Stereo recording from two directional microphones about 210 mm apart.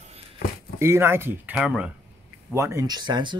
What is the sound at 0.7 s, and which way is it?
Speech, 10° right (ahead or behind).